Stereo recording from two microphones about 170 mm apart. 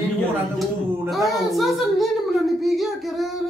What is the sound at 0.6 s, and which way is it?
A woman's voice, centre (ahead or behind).